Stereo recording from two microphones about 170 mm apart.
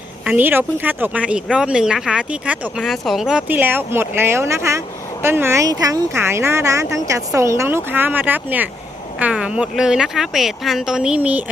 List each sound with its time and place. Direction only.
0.3 s speech: 10° right (ahead or behind)